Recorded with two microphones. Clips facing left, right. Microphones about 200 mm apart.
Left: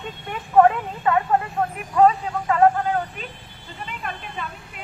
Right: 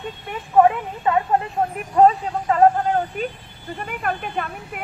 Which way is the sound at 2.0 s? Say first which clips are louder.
Right 2 dB; 35° right (ahead or behind).